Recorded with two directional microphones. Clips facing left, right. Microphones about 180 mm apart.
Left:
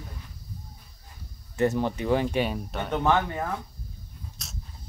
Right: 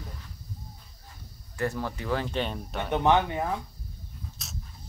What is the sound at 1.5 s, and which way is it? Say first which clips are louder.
Speech: left 6 dB; 20° left (ahead or behind).